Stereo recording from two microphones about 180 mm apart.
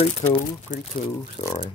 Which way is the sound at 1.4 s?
30° left (ahead or behind).